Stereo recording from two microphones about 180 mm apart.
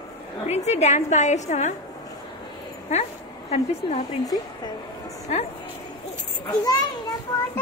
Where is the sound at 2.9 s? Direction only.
40° left (ahead or behind).